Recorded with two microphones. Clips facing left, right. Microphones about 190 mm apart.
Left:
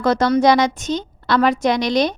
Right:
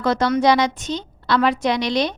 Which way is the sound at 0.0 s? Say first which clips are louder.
Left 3 dB; 45° left (ahead or behind).